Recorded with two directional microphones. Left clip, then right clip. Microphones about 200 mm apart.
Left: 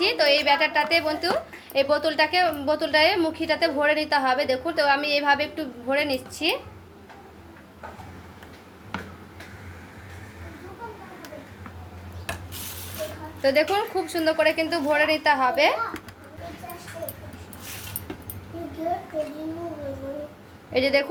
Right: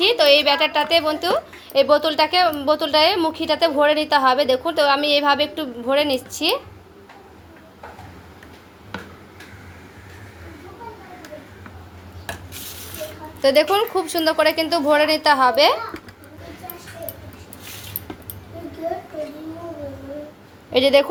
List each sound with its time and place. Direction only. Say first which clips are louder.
0.0 s a woman's voice: right 6 dB; 35° right (ahead or behind)
13.4 s a woman's voice: right 5 dB; 35° right (ahead or behind)
20.7 s a woman's voice: right 7 dB; 35° right (ahead or behind)